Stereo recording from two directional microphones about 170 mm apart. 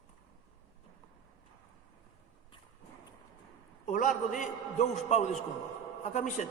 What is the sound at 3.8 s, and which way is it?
A man's voice, 50° left (ahead or behind).